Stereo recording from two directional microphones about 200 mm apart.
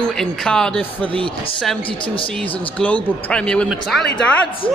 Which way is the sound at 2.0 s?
25° left (ahead or behind).